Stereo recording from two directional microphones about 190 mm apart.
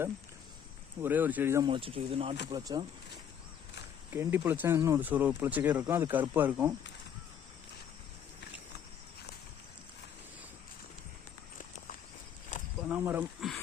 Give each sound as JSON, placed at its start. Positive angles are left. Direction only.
{"t": 1.0, "sound": "speech", "side_deg": -10}
{"t": 1.6, "sound": "speech", "side_deg": -25}
{"t": 4.1, "sound": "speech", "side_deg": -10}
{"t": 12.5, "sound": "cricket", "side_deg": 40}
{"t": 12.9, "sound": "wild animals", "side_deg": -10}